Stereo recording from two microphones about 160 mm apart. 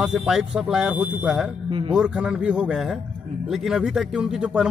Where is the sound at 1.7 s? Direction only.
35° right (ahead or behind).